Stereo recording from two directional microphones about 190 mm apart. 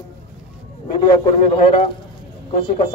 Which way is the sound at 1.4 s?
30° left (ahead or behind).